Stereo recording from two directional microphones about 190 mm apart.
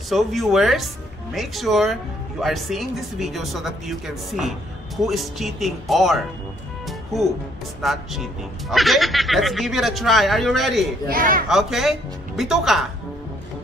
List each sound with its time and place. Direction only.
0.1 s speech: centre (ahead or behind)
6.9 s music: centre (ahead or behind)
7.8 s speech: centre (ahead or behind)
11.1 s a man's voice: 45° right (ahead or behind)
11.4 s speech: centre (ahead or behind)